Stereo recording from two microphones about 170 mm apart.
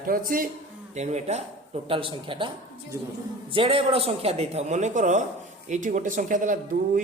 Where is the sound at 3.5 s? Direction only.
35° right (ahead or behind).